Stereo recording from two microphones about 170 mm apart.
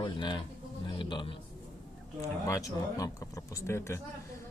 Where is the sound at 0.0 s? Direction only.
25° left (ahead or behind).